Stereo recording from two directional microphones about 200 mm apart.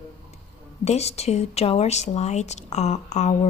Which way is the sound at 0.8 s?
35° left (ahead or behind).